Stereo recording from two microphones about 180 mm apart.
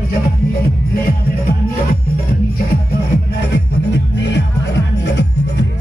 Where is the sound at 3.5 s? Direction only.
75° left (ahead or behind).